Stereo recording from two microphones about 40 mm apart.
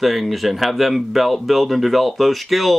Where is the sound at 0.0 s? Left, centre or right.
Centre.